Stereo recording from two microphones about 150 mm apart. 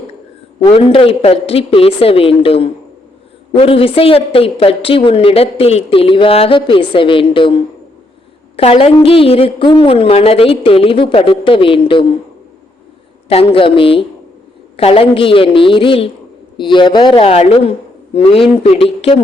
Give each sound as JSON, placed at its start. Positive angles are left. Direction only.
{"t": 0.7, "sound": "a woman's voice", "side_deg": 35}
{"t": 13.2, "sound": "a woman's voice", "side_deg": 40}